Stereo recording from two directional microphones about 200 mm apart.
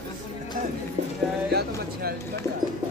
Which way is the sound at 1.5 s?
55° right (ahead or behind).